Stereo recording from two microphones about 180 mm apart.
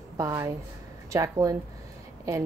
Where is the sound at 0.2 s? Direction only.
15° right (ahead or behind).